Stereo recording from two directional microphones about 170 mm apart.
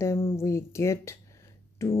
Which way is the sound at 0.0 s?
15° left (ahead or behind).